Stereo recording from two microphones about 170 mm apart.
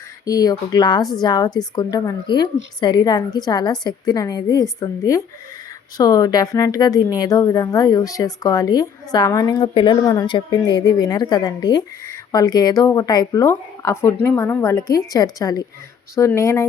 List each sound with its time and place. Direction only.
0.3 s a woman's voice: 20° left (ahead or behind)